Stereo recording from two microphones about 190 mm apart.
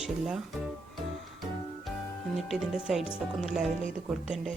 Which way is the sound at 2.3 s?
Centre (ahead or behind).